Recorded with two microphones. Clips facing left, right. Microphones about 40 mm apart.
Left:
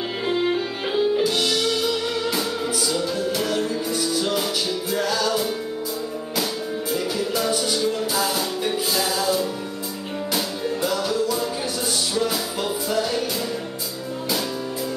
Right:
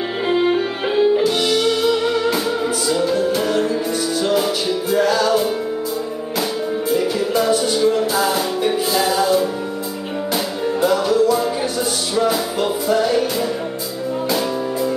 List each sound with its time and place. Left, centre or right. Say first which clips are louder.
0.3 s music: right 6 dB; right
6.9 s music: right 6 dB; centre